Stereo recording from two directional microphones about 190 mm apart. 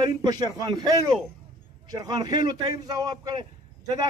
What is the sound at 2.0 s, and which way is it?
A man's voice, 20° right (ahead or behind).